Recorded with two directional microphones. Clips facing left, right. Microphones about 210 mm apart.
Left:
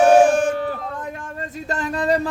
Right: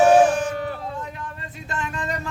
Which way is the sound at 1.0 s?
50° left (ahead or behind).